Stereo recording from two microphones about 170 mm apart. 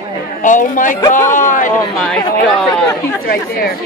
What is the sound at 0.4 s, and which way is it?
A man's voice, 50° left (ahead or behind).